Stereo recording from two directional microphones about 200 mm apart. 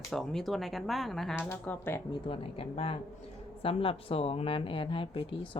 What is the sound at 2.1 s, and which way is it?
Speech, 30° left (ahead or behind).